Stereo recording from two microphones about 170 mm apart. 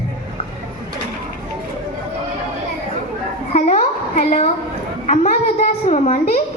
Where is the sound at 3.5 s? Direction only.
40° left (ahead or behind).